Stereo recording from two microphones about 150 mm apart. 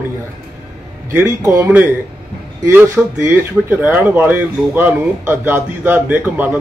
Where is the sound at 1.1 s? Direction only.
15° right (ahead or behind).